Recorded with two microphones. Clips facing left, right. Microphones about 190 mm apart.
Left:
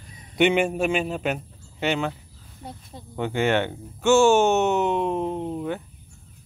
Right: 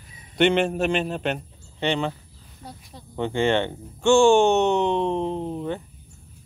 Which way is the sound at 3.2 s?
5° left (ahead or behind).